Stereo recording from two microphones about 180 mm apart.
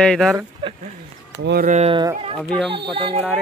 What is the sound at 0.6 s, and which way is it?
Speech, 30° right (ahead or behind).